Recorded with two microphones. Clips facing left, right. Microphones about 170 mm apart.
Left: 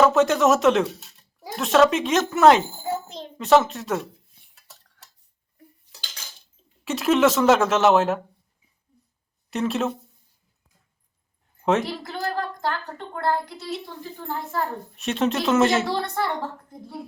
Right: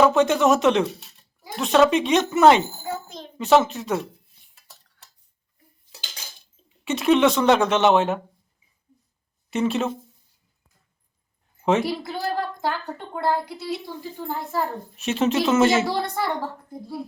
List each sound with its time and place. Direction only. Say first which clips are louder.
0.0 s speech: even; centre (ahead or behind)
2.8 s a sound: left 3 dB; 25° left (ahead or behind)
3.3 s speech: even; centre (ahead or behind)
5.9 s cutlery: right 3 dB; 15° right (ahead or behind)
6.8 s speech: right 1 dB; centre (ahead or behind)
9.5 s speech: right 1 dB; centre (ahead or behind)
11.6 s speech: right 1 dB; centre (ahead or behind)